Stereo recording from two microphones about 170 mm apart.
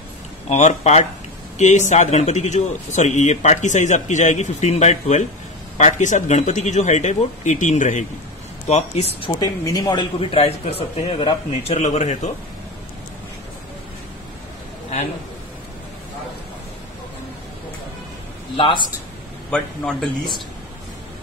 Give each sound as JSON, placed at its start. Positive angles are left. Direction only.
{"t": 0.5, "sound": "a man's voice", "side_deg": 40}
{"t": 9.4, "sound": "a man's voice", "side_deg": 20}
{"t": 19.5, "sound": "a man's voice", "side_deg": 5}